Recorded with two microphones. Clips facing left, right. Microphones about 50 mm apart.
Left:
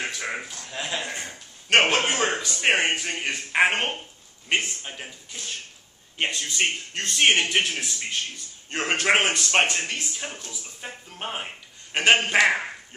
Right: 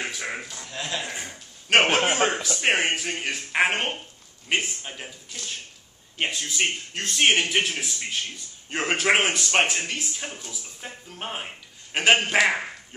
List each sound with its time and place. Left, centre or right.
0.0 s a sound: centre
2.0 s a man's voice: right
2.8 s speech: centre
6.1 s a man's voice: centre